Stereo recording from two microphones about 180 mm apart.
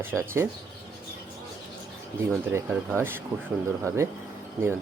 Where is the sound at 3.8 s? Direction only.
15° right (ahead or behind).